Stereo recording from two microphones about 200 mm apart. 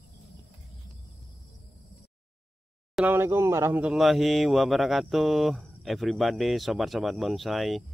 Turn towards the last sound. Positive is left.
turn(degrees=0)  # may be behind; listen again after turning